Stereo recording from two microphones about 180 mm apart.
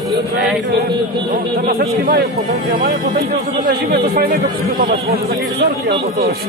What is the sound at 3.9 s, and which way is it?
A man's voice, 60° right (ahead or behind).